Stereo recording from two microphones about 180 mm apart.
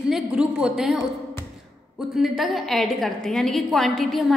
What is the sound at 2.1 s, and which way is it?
A woman's voice, centre (ahead or behind).